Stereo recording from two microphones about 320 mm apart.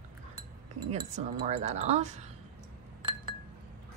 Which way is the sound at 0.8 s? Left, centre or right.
Centre.